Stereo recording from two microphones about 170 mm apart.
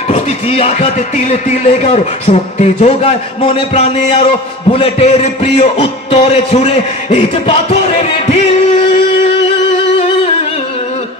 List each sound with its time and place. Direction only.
0.1 s speech: 35° left (ahead or behind)